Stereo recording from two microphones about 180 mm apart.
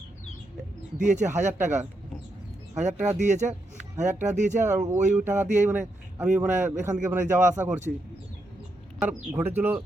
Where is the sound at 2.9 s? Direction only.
10° right (ahead or behind).